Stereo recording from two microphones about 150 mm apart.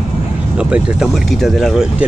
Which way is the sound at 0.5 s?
5° right (ahead or behind).